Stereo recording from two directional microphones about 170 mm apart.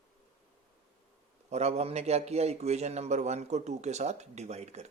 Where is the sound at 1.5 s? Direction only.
40° right (ahead or behind).